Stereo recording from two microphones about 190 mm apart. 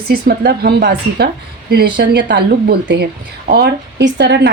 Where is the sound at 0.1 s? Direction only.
55° right (ahead or behind).